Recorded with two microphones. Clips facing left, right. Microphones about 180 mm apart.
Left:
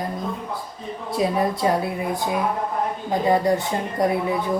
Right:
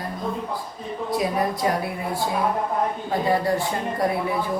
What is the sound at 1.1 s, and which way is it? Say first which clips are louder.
A woman's voice: left 2 dB; 25° left (ahead or behind).